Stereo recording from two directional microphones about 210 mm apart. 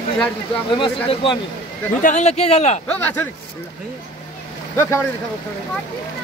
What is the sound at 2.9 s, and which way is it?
Speech, 10° left (ahead or behind).